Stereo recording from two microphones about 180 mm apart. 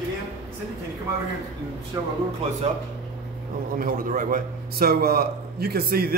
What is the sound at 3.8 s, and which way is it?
A man's voice, 50° right (ahead or behind).